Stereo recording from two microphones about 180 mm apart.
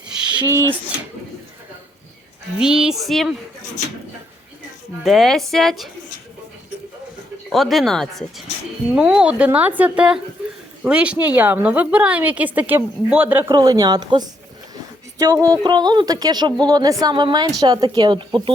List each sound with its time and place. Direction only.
0.3 s speech: 15° right (ahead or behind)
2.6 s speech: 5° right (ahead or behind)
5.0 s speech: centre (ahead or behind)
7.5 s a woman's voice: centre (ahead or behind); by 18.5 s 25° right (ahead or behind)